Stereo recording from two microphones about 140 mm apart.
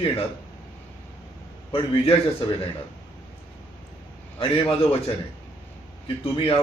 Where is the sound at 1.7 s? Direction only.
40° left (ahead or behind).